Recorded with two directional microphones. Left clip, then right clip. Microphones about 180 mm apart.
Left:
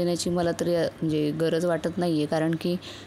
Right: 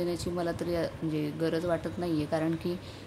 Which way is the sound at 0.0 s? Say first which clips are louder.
Left 6 dB; 45° left (ahead or behind).